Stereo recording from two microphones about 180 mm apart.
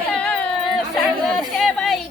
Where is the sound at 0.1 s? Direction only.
5° left (ahead or behind).